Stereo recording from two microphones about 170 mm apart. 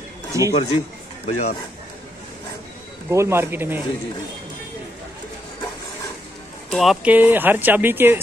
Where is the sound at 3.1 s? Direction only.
15° right (ahead or behind).